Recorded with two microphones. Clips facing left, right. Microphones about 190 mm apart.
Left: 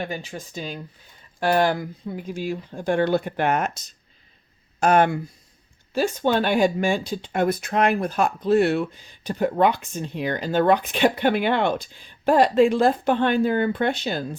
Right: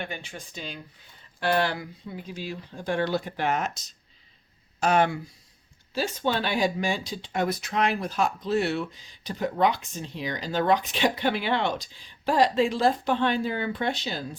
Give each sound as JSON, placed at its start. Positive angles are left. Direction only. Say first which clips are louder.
{"t": 0.0, "sound": "speech", "louder": "left 6 dB", "side_deg": 40}